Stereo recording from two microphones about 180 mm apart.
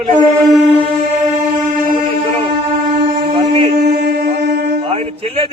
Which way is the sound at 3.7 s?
60° right (ahead or behind).